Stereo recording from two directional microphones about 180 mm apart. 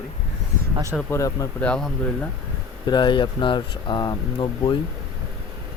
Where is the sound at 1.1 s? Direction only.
20° left (ahead or behind).